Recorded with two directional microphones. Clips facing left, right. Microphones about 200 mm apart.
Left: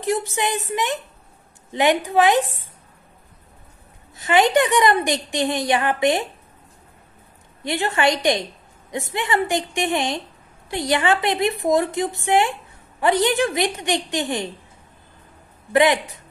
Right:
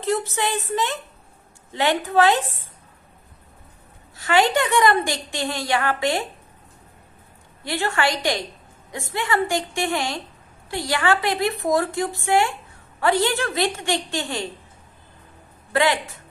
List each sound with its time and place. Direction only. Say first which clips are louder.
0.0 s a woman's voice: left 1 dB; 15° left (ahead or behind)
4.2 s a woman's voice: left 2 dB; 20° left (ahead or behind)
7.6 s a woman's voice: left 3 dB; 20° left (ahead or behind)
15.7 s a woman's voice: left 4 dB; 20° left (ahead or behind)